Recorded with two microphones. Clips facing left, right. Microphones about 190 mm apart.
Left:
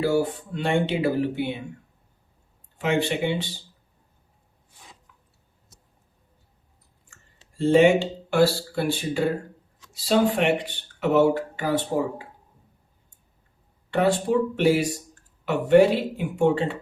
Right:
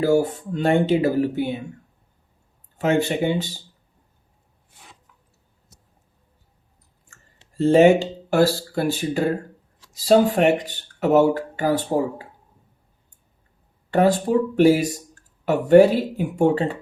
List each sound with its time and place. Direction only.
0.0 s speech: 40° right (ahead or behind)
2.7 s speech: 45° right (ahead or behind)
7.5 s speech: 40° right (ahead or behind)
13.9 s speech: 40° right (ahead or behind)